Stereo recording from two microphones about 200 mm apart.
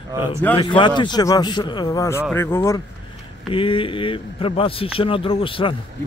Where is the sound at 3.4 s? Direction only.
25° left (ahead or behind).